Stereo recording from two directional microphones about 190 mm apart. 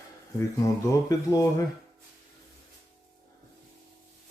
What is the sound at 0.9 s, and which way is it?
Speech, 15° left (ahead or behind).